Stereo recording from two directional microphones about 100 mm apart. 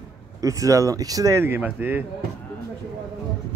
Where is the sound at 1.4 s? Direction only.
20° right (ahead or behind).